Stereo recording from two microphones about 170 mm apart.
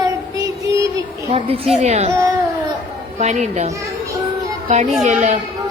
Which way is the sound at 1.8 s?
40° right (ahead or behind).